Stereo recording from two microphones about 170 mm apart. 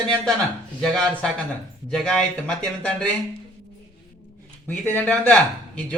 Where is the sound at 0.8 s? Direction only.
Centre (ahead or behind).